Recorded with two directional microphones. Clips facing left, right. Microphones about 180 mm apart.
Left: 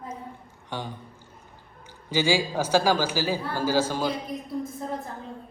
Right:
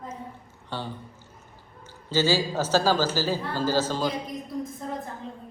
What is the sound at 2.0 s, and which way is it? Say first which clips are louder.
A man's voice: even; 15° left (ahead or behind).